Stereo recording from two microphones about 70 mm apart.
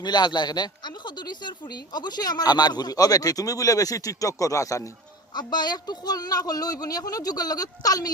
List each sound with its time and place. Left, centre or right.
0.0 s speech: left
5.3 s speech: left